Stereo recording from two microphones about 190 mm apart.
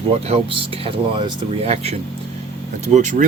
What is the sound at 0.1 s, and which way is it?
Speech, 30° right (ahead or behind).